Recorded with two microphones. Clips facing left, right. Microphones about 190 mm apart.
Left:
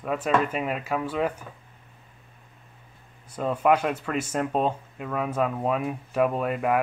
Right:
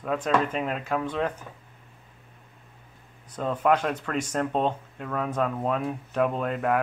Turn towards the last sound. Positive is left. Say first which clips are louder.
# left 1 dB
turn(degrees=5)  # may be behind; listen again after turning